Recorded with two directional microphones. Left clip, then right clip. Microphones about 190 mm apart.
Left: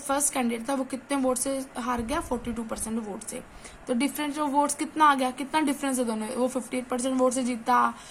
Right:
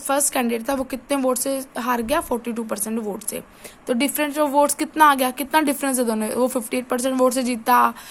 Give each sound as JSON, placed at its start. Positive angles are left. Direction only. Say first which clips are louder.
{"t": 0.1, "sound": "speech", "louder": "right 6 dB", "side_deg": -45}